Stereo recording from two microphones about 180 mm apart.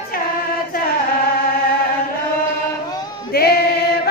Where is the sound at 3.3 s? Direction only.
60° left (ahead or behind).